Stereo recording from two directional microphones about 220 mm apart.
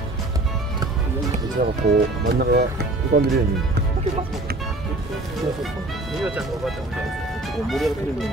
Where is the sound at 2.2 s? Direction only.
45° right (ahead or behind).